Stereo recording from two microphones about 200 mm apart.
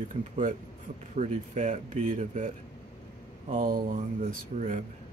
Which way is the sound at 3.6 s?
45° right (ahead or behind).